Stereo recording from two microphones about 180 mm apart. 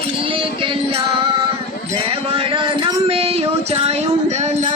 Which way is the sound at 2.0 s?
30° right (ahead or behind).